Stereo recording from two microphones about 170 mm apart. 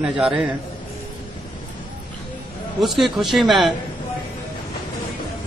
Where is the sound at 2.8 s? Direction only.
Centre (ahead or behind).